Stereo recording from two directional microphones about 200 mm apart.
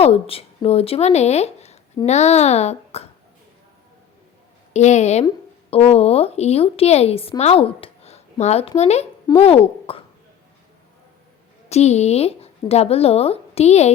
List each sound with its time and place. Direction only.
0.0 s a woman's voice: 30° left (ahead or behind)
4.7 s a woman's voice: 35° left (ahead or behind)
11.7 s a woman's voice: 35° left (ahead or behind)